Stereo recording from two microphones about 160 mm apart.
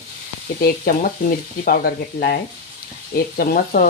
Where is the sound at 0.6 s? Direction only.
60° left (ahead or behind).